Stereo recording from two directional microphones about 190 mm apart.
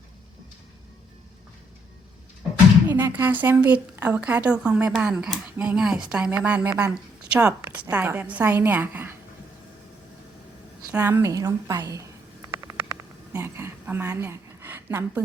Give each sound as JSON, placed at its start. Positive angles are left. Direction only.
{"t": 2.8, "sound": "a woman's voice", "side_deg": -10}
{"t": 10.9, "sound": "a woman's voice", "side_deg": -10}
{"t": 12.5, "sound": "a sound", "side_deg": -15}